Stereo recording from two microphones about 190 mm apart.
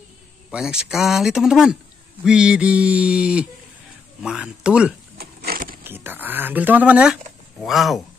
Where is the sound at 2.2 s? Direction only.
5° right (ahead or behind).